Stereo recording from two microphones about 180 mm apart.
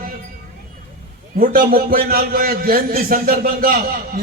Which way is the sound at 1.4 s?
50° right (ahead or behind).